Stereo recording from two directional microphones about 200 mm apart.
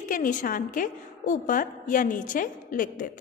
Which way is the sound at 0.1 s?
40° left (ahead or behind).